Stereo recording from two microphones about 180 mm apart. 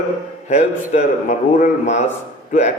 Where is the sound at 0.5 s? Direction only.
40° left (ahead or behind).